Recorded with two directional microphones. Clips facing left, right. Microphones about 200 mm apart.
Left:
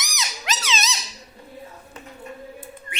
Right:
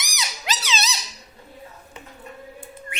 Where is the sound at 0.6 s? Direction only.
35° right (ahead or behind).